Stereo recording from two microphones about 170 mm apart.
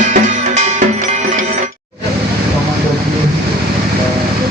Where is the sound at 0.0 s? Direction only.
45° right (ahead or behind).